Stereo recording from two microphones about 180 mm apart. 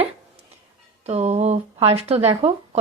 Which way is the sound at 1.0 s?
35° right (ahead or behind).